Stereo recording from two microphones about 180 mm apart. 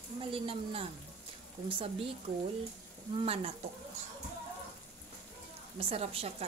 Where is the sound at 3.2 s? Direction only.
35° right (ahead or behind).